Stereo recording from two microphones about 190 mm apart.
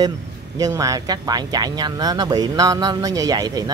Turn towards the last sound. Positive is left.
turn(degrees=-20)  # may be behind; listen again after turning